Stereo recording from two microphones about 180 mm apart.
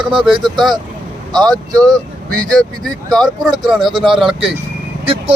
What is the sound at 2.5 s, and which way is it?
Speech, centre (ahead or behind).